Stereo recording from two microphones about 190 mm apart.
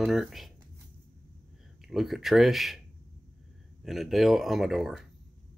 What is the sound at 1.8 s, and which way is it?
Speech, centre (ahead or behind).